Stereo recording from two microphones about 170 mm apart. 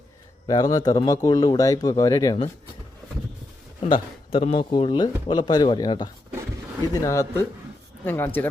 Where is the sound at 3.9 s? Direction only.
35° left (ahead or behind).